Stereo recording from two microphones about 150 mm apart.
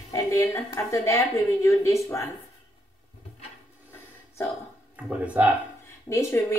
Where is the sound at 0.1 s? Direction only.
20° left (ahead or behind).